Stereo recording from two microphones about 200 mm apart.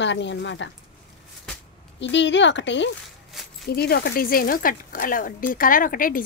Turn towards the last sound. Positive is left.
turn(degrees=45)  # may be behind; listen again after turning